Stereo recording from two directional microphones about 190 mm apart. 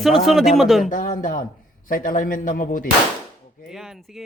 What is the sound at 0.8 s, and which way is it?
A man's voice, 45° left (ahead or behind).